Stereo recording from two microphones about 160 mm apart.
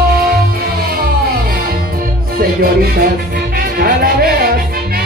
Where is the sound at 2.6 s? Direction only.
70° right (ahead or behind).